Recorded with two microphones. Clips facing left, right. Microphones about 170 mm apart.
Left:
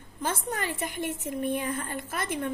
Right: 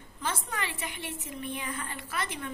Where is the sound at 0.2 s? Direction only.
45° left (ahead or behind).